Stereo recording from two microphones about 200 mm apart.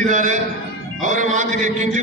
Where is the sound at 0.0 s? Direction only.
40° right (ahead or behind).